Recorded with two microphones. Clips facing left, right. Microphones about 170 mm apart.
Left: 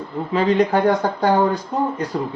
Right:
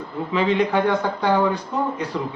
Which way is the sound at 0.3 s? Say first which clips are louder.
Left 3 dB; 40° left (ahead or behind).